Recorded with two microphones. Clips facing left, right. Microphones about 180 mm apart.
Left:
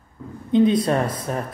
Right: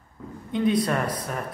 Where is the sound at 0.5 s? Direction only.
25° left (ahead or behind).